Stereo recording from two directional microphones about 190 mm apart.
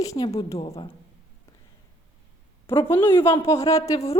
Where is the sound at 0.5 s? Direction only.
30° left (ahead or behind).